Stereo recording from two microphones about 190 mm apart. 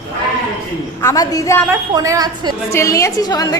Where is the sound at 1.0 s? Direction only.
15° left (ahead or behind).